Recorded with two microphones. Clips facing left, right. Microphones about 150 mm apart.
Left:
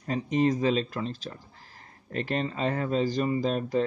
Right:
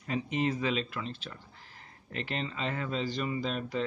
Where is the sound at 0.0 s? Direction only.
40° left (ahead or behind).